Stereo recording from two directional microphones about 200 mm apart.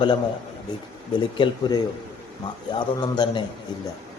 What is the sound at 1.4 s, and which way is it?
A man's voice, 20° left (ahead or behind).